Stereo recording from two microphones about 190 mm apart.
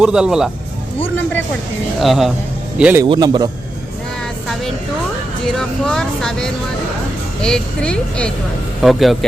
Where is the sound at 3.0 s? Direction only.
20° right (ahead or behind).